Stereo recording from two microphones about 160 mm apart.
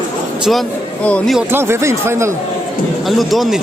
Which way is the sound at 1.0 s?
10° left (ahead or behind).